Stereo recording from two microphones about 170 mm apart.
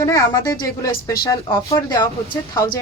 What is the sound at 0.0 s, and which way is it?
Speech, 20° left (ahead or behind).